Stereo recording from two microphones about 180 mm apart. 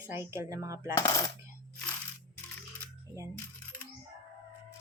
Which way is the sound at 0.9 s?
20° left (ahead or behind).